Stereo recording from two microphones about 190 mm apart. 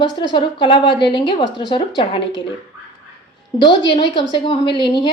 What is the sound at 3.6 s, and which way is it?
A woman's voice, 25° left (ahead or behind).